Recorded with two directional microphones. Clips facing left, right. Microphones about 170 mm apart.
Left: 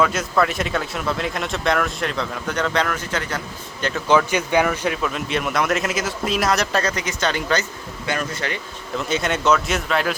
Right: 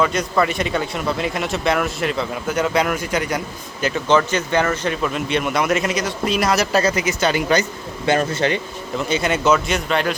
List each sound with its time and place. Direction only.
0.0 s speech: centre (ahead or behind)
4.1 s speech: 10° left (ahead or behind)
5.0 s speech: centre (ahead or behind)
8.0 s speech: 25° right (ahead or behind)
9.0 s speech: centre (ahead or behind)